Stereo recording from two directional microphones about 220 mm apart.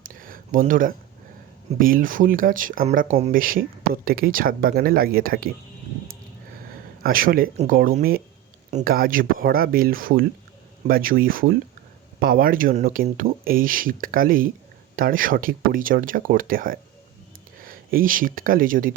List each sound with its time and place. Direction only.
0.0 s a sound: 40° right (ahead or behind)
1.8 s speech: 40° right (ahead or behind)
7.0 s speech: 40° right (ahead or behind)